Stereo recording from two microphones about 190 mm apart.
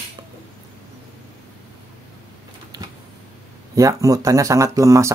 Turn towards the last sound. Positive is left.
turn(degrees=-15)  # may be behind; listen again after turning